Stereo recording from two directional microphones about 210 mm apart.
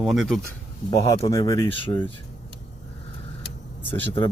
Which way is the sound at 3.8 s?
10° left (ahead or behind).